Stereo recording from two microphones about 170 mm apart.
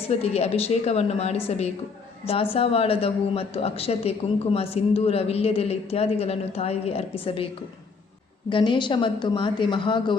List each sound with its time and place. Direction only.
0.1 s speech: 35° left (ahead or behind)